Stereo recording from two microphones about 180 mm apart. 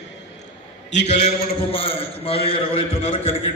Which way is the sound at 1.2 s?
35° left (ahead or behind).